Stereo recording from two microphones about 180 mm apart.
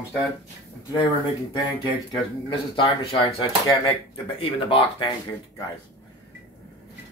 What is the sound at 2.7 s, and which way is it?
Speech, 30° left (ahead or behind).